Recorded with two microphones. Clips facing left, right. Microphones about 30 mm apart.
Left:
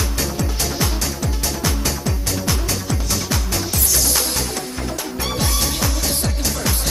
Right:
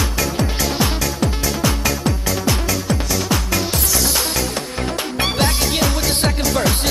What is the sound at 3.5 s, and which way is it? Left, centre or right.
Music, right.